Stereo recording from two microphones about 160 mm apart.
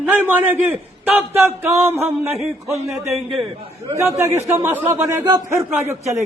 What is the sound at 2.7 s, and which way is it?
Speech, centre (ahead or behind).